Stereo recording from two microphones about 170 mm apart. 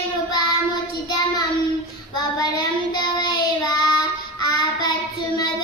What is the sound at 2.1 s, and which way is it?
Child singing, 25° left (ahead or behind).